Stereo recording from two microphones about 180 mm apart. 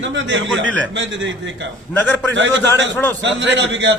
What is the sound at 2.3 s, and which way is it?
A man's voice, 85° right.